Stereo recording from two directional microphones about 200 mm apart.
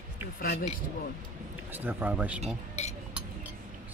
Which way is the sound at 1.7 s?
10° right (ahead or behind).